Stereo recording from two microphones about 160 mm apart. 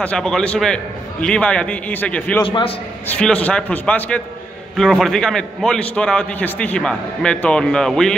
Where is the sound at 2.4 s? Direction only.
35° left (ahead or behind).